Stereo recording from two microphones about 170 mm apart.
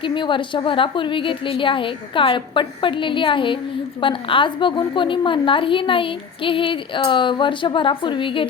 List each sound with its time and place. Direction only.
0.0 s a woman's voice: 30° left (ahead or behind)